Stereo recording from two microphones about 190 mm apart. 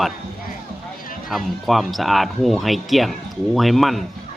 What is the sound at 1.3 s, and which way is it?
Speech, centre (ahead or behind).